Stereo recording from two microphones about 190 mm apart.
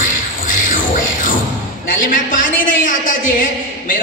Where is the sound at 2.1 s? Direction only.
45° left (ahead or behind).